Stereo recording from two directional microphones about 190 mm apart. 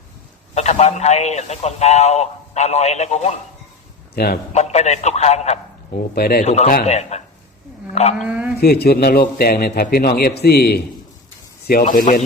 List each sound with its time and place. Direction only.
0.5 s a man's voice: 35° left (ahead or behind)
4.1 s speech: 55° left (ahead or behind)
4.5 s a man's voice: 35° left (ahead or behind)
6.1 s speech: 55° left (ahead or behind)
6.4 s a man's voice: 35° left (ahead or behind)
8.2 s speech: 5° right (ahead or behind)
8.6 s a man's voice: 55° left (ahead or behind)